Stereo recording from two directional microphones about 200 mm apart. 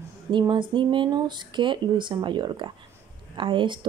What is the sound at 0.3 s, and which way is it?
Speech, 25° right (ahead or behind).